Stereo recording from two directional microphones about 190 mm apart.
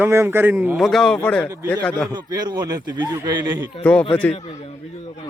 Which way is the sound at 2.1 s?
20° right (ahead or behind).